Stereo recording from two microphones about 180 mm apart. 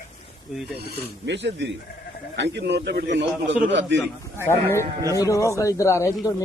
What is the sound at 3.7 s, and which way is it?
Speech, 80° right.